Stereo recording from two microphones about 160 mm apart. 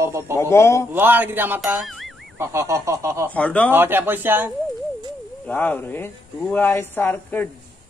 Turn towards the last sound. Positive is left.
turn(degrees=10)  # may be behind; listen again after turning